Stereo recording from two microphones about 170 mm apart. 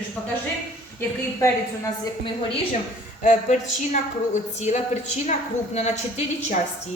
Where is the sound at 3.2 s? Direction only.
50° left (ahead or behind).